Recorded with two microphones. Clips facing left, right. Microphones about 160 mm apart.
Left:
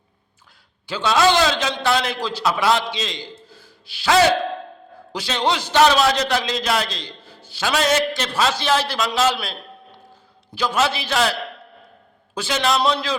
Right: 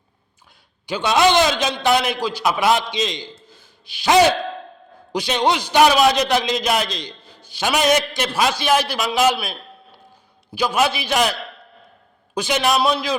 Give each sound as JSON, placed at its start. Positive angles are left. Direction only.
{"t": 0.9, "sound": "a man's voice", "side_deg": -15}